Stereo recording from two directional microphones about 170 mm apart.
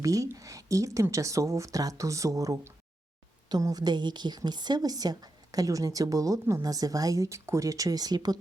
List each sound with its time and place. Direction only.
0.0 s a woman's voice: 20° right (ahead or behind)